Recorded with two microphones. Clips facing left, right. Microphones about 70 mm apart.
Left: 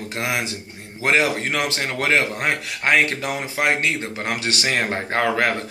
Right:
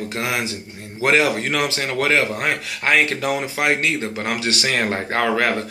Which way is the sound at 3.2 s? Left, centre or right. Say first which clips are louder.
Right 2 dB; centre.